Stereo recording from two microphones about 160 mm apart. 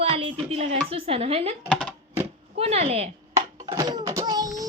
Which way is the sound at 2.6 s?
40° right (ahead or behind).